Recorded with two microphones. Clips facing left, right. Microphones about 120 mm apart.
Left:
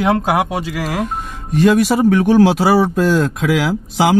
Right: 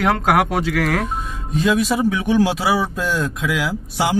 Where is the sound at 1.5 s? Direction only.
70° left (ahead or behind).